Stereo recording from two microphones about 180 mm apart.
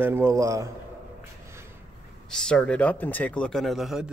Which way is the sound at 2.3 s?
5° left (ahead or behind).